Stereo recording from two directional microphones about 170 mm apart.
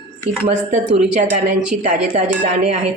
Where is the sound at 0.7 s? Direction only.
45° right (ahead or behind).